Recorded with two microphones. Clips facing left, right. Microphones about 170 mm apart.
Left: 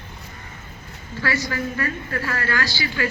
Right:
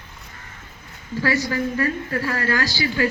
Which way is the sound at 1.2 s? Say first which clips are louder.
Right 3 dB; 35° right (ahead or behind).